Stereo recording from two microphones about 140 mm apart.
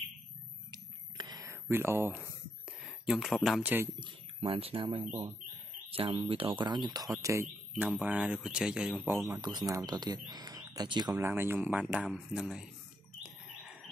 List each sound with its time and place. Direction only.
0.7 s a sound: 30° right (ahead or behind)
2.8 s speech: centre (ahead or behind)
4.0 s speech: 40° right (ahead or behind); by 7.4 s 20° right (ahead or behind)
7.8 s speech: 10° right (ahead or behind)
9.3 s speech: 30° right (ahead or behind)
11.2 s speech: 15° right (ahead or behind)
13.2 s bird: centre (ahead or behind)